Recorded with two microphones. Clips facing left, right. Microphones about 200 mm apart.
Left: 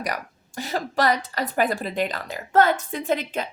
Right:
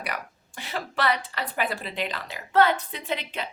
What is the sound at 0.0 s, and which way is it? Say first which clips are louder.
A woman's voice: left 5 dB; 40° left (ahead or behind).